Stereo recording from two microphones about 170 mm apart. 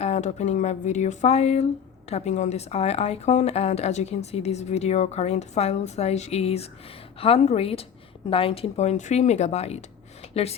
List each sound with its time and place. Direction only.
0.0 s a woman's voice: 40° left (ahead or behind)